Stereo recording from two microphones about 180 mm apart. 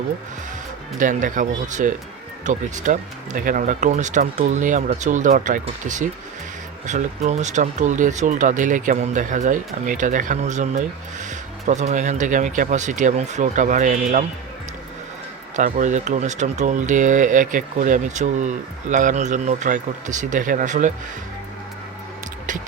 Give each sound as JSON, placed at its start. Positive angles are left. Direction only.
{"t": 0.9, "sound": "speech", "side_deg": -45}
{"t": 15.5, "sound": "speech", "side_deg": -45}